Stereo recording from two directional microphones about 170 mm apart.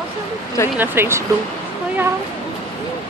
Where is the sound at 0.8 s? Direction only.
15° right (ahead or behind).